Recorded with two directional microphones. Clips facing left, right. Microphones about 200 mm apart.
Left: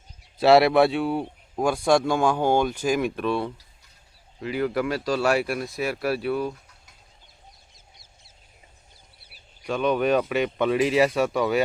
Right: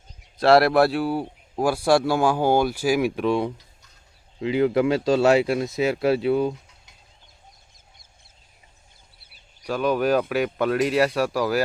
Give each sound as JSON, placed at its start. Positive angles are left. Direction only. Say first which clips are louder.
{"t": 0.3, "sound": "a man's voice", "louder": "even", "side_deg": 0}
{"t": 9.6, "sound": "a man's voice", "louder": "right 1 dB", "side_deg": -5}